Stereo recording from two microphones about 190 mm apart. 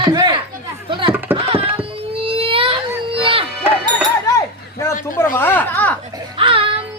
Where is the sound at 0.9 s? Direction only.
25° right (ahead or behind).